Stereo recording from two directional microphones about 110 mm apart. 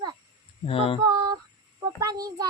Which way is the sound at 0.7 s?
60° left (ahead or behind).